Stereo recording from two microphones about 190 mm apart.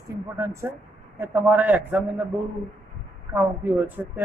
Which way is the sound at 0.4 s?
15° right (ahead or behind).